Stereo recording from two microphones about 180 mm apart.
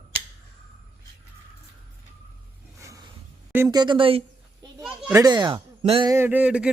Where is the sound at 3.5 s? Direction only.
15° right (ahead or behind).